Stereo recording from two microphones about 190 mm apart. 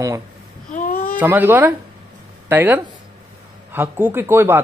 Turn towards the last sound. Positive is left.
turn(degrees=-15)  # may be behind; listen again after turning